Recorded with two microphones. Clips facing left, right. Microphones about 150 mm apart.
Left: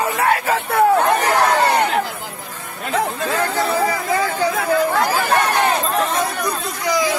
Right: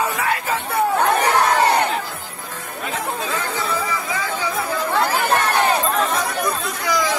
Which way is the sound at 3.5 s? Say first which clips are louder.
Left 5 dB; 60° left (ahead or behind).